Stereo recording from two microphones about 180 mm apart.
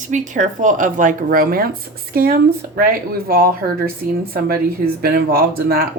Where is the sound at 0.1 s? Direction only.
45° right (ahead or behind).